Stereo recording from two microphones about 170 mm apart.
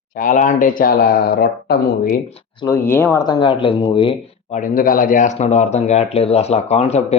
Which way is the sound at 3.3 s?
30° left (ahead or behind).